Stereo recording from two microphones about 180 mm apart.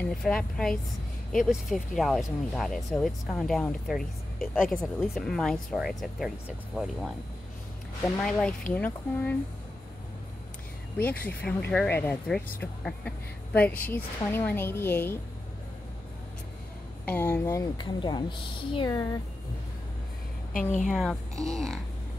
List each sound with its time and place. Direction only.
0.1 s a woman's voice: 5° left (ahead or behind)
11.0 s speech: 10° left (ahead or behind)
17.0 s speech: 10° left (ahead or behind)
20.8 s a woman's voice: centre (ahead or behind)